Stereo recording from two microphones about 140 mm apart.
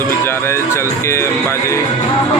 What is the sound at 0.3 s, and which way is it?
Speech, 15° left (ahead or behind).